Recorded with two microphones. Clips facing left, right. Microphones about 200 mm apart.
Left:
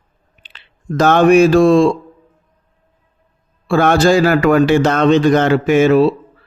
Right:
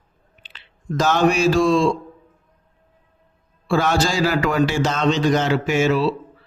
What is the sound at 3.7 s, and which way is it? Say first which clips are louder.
A man's voice: left 8 dB; 55° left (ahead or behind).